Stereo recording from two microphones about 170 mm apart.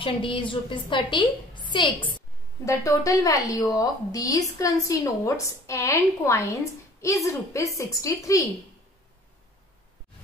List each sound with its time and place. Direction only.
0.0 s a woman's voice: 30° left (ahead or behind)